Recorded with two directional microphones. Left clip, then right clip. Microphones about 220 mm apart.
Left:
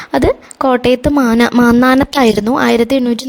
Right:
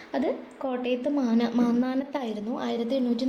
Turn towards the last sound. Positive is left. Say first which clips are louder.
# left 15 dB
turn(degrees=50)  # may be behind; listen again after turning